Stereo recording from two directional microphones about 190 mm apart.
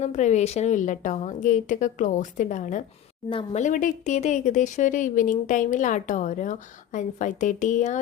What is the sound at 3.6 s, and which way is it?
Speech, 45° left (ahead or behind).